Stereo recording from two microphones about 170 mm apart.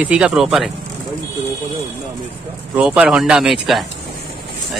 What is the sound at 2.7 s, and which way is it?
Speech, 5° right (ahead or behind).